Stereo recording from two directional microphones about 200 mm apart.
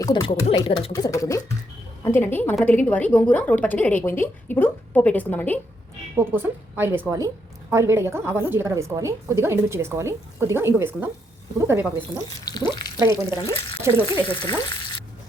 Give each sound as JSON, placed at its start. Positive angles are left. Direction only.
{"t": 0.0, "sound": "a woman's voice", "side_deg": 20}
{"t": 6.1, "sound": "a woman's voice", "side_deg": -10}
{"t": 12.5, "sound": "speech", "side_deg": 20}
{"t": 13.0, "sound": "a woman's voice", "side_deg": -15}
{"t": 14.3, "sound": "frying", "side_deg": 25}